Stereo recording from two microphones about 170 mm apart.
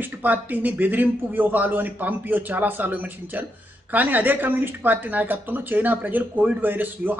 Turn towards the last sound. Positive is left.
turn(degrees=-10)  # may be behind; listen again after turning